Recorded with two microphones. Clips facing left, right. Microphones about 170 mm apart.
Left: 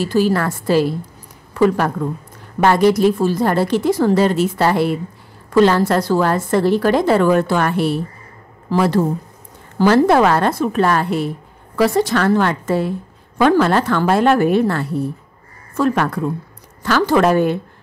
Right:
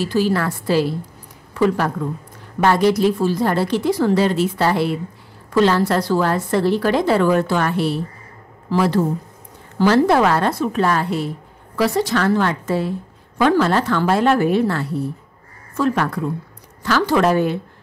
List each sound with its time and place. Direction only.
0.0 s a woman's voice: 45° left (ahead or behind)